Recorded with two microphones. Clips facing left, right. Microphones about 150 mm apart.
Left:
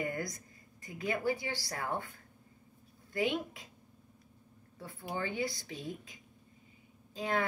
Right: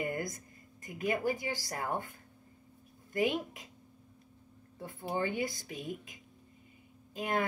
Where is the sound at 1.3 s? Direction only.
45° right (ahead or behind).